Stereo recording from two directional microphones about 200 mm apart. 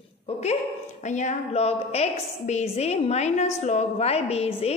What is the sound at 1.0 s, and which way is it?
A woman's voice, 35° left (ahead or behind).